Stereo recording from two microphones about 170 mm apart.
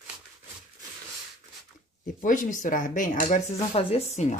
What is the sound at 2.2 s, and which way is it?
Speech, 50° left (ahead or behind).